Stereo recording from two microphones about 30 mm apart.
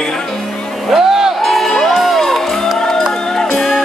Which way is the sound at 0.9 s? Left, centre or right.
Centre.